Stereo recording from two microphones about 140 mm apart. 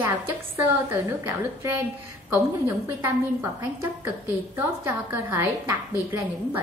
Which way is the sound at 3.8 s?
15° right (ahead or behind).